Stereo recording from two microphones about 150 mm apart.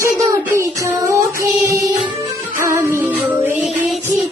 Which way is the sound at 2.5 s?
20° right (ahead or behind).